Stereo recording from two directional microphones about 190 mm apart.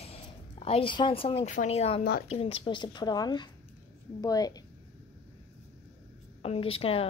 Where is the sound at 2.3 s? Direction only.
30° left (ahead or behind).